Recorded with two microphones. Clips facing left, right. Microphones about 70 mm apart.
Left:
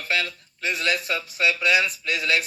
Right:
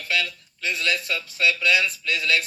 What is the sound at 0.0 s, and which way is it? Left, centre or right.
A man's voice, left.